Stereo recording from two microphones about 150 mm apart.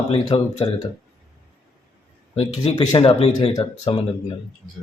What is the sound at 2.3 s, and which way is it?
Speech, 40° left (ahead or behind).